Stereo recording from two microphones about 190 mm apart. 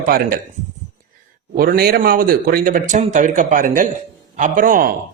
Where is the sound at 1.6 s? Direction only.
55° right (ahead or behind).